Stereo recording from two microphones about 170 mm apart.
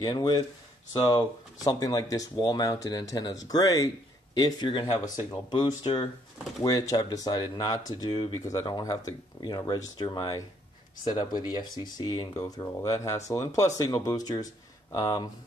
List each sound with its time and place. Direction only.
0.0 s speech: 25° left (ahead or behind)